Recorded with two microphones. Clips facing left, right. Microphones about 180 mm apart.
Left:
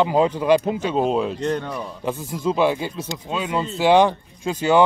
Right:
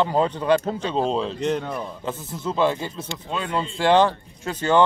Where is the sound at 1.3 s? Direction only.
5° right (ahead or behind).